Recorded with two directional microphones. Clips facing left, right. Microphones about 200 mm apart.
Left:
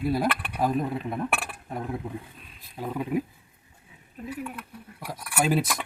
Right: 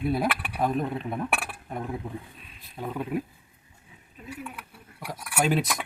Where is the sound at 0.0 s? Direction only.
Centre (ahead or behind).